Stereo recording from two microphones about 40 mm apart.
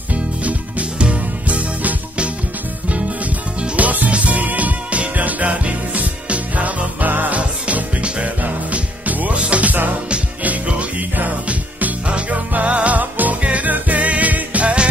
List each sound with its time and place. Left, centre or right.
0.1 s music: right
3.7 s music: right